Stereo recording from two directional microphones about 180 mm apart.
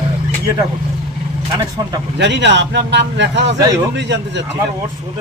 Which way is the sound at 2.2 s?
75° right (ahead or behind).